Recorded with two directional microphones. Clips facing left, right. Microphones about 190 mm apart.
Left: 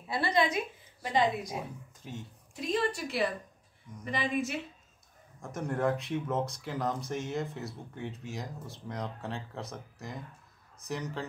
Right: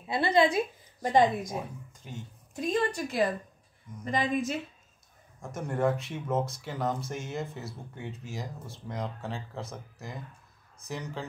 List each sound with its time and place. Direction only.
0.0 s a woman's voice: 25° right (ahead or behind)
1.0 s a woman's voice: 45° right (ahead or behind)
2.0 s speech: centre (ahead or behind)
2.6 s a woman's voice: 45° right (ahead or behind)
5.4 s speech: centre (ahead or behind)